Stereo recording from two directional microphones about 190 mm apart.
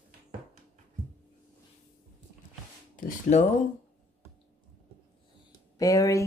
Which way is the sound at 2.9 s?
45° left (ahead or behind).